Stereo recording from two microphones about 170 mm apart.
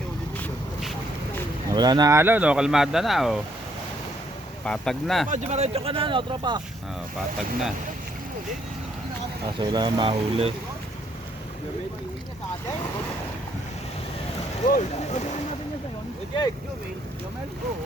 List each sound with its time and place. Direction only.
1.7 s speech: 25° right (ahead or behind); by 3.4 s centre (ahead or behind)
4.6 s speech: 5° left (ahead or behind)
5.3 s speech: 40° right (ahead or behind)
9.6 s speech: 25° right (ahead or behind)
14.7 s speech: 45° left (ahead or behind)